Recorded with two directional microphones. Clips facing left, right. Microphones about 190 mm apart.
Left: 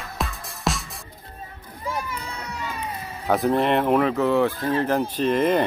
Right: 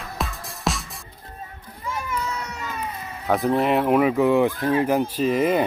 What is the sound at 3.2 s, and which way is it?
Speech, centre (ahead or behind).